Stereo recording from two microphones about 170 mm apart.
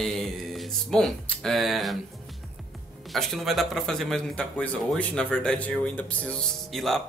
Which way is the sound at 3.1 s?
Centre (ahead or behind).